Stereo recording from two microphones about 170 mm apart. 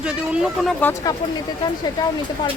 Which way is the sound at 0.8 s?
20° left (ahead or behind).